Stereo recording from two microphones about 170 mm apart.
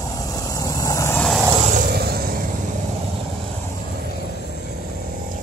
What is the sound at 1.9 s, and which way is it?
Vehicle, 65° right (ahead or behind).